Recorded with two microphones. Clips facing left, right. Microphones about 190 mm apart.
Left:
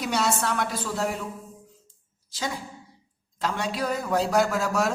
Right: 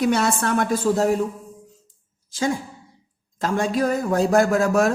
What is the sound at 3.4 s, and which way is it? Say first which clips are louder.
A woman's voice: right 7 dB; 45° right (ahead or behind).